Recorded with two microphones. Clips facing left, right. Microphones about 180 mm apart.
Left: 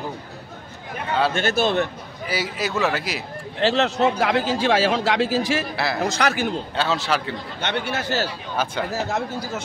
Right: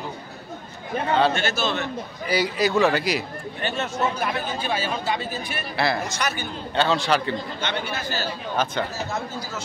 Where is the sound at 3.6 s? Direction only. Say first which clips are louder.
Left 7 dB; 80° left.